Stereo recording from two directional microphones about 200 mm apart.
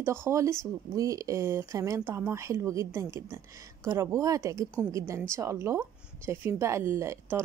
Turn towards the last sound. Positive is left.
turn(degrees=-15)  # may be behind; listen again after turning